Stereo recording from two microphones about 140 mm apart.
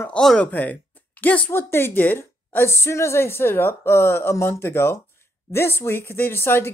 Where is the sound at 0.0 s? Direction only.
5° left (ahead or behind).